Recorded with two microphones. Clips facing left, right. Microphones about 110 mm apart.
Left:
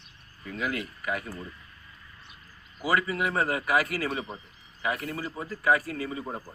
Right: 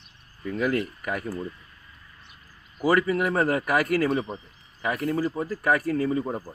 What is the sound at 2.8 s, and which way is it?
Speech, 50° right (ahead or behind).